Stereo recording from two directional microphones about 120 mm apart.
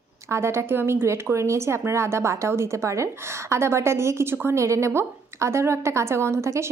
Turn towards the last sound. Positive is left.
turn(degrees=-25)  # may be behind; listen again after turning